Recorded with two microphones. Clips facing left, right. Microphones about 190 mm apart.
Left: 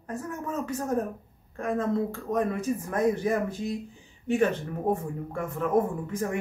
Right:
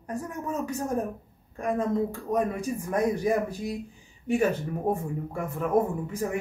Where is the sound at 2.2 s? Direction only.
10° right (ahead or behind).